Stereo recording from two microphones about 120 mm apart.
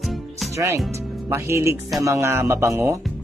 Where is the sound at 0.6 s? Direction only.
25° right (ahead or behind).